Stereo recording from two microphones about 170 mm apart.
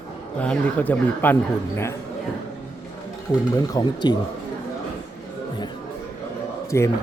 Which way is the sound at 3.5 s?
25° left (ahead or behind).